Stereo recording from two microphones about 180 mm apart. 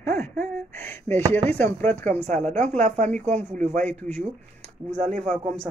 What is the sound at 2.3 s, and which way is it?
A woman's voice, 40° right (ahead or behind).